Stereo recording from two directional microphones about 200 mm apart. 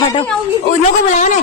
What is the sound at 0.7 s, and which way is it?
Speech, 40° left (ahead or behind).